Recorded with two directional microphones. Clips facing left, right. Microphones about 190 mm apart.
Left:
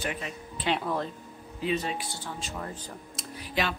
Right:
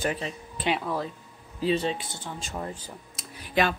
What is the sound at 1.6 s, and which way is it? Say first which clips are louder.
Speech: right 4 dB; 30° right (ahead or behind).